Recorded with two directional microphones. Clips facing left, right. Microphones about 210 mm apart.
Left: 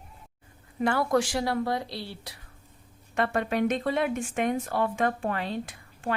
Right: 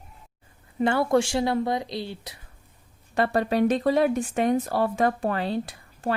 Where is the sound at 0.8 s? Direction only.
25° right (ahead or behind).